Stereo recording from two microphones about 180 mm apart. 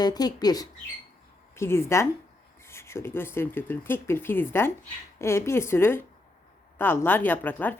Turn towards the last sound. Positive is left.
turn(degrees=10)  # may be behind; listen again after turning